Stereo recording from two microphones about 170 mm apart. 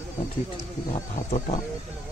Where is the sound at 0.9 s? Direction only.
45° left (ahead or behind).